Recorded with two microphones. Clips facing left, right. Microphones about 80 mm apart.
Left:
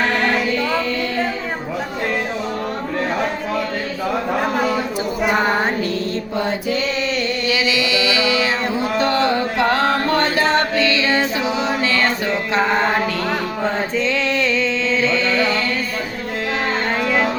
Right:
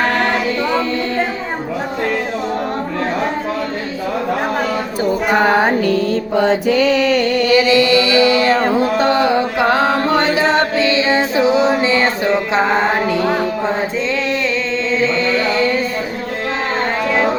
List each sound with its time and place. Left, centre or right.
6.4 s mantra: right
8.7 s music: right
9.1 s carnatic music: centre
9.7 s music: centre